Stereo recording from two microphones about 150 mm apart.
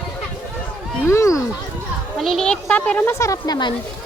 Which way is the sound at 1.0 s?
20° left (ahead or behind).